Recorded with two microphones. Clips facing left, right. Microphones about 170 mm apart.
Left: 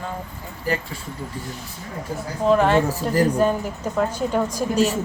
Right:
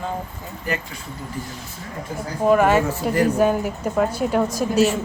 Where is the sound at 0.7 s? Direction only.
30° left (ahead or behind).